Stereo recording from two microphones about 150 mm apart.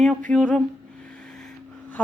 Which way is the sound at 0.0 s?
5° left (ahead or behind).